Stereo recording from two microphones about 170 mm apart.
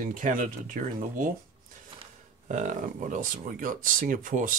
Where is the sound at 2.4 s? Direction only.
50° right (ahead or behind).